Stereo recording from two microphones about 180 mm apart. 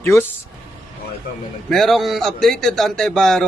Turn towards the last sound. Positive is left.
turn(degrees=0)  # may be behind; listen again after turning